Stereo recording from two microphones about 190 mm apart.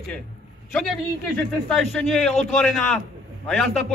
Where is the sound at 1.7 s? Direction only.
Centre (ahead or behind).